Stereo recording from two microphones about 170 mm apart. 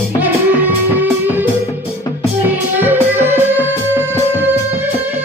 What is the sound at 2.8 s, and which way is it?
Music, 10° right (ahead or behind).